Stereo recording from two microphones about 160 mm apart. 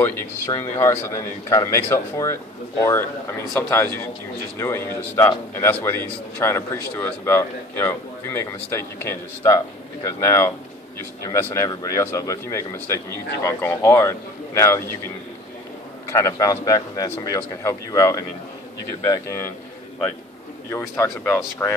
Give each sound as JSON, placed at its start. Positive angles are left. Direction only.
{"t": 0.0, "sound": "a man's voice", "side_deg": 15}
{"t": 16.1, "sound": "a man's voice", "side_deg": 20}
{"t": 20.7, "sound": "a man's voice", "side_deg": 15}